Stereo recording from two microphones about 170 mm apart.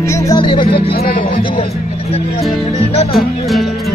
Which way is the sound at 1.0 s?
55° left (ahead or behind).